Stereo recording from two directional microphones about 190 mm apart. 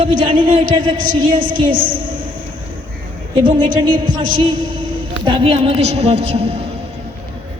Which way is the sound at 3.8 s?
25° right (ahead or behind).